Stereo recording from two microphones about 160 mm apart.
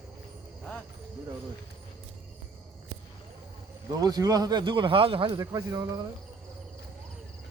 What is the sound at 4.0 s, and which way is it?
A man's voice, 25° right (ahead or behind).